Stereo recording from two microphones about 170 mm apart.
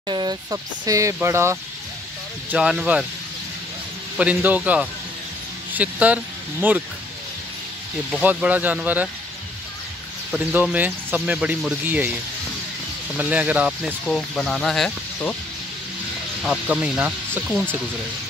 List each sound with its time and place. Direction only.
0.1 s speech: 25° right (ahead or behind)
2.5 s speech: 5° right (ahead or behind)
4.2 s speech: 10° right (ahead or behind)
8.2 s speech: 10° right (ahead or behind)
10.3 s speech: 10° right (ahead or behind)
13.2 s speech: 10° right (ahead or behind)
16.4 s speech: 5° right (ahead or behind)